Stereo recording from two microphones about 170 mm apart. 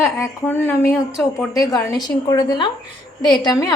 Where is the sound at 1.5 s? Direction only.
20° left (ahead or behind).